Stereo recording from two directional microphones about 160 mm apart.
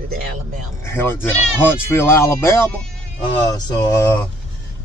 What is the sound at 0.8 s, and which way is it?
Speech, 15° left (ahead or behind).